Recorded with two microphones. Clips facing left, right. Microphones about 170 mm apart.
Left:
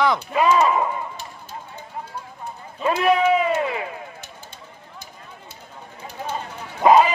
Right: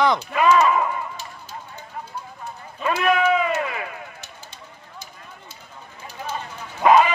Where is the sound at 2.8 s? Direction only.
30° left (ahead or behind).